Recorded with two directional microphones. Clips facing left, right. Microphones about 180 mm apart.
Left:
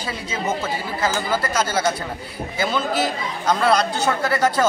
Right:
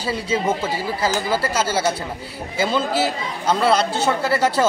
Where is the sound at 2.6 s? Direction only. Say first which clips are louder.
Right 2 dB; 30° right (ahead or behind).